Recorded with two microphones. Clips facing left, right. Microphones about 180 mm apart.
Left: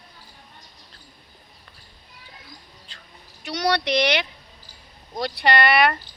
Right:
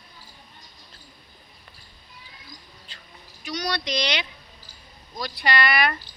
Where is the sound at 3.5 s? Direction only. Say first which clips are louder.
Left 6 dB; 70° left (ahead or behind).